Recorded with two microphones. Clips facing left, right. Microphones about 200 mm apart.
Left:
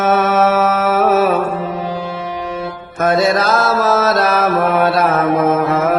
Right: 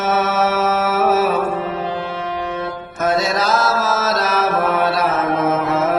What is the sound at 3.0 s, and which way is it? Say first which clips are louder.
Mantra: left 5 dB; 55° left (ahead or behind).